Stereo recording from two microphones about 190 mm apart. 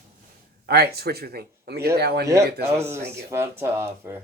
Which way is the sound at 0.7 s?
55° right (ahead or behind).